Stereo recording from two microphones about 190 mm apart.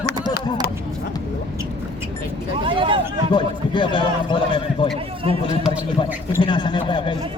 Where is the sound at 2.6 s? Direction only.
25° right (ahead or behind).